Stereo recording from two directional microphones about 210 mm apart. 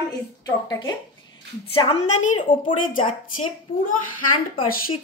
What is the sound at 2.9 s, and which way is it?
Speech, 40° left (ahead or behind).